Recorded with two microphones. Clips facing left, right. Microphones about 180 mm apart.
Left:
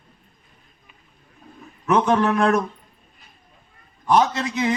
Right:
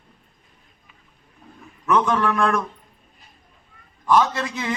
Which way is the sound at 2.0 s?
25° left (ahead or behind).